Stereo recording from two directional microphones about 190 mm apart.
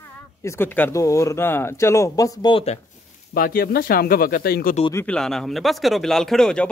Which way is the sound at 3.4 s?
50° left (ahead or behind).